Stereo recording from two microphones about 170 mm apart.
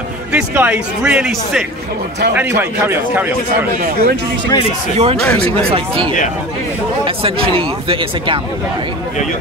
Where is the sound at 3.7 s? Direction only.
60° right (ahead or behind).